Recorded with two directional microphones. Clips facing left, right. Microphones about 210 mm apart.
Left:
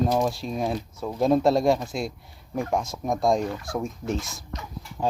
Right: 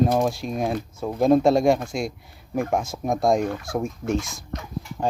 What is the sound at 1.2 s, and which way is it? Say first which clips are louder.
Speech: right 3 dB; centre (ahead or behind).